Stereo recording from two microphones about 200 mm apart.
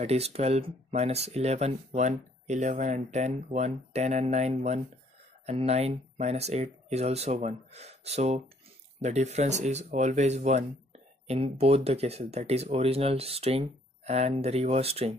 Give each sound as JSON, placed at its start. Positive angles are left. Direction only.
{"t": 0.0, "sound": "speech", "side_deg": -30}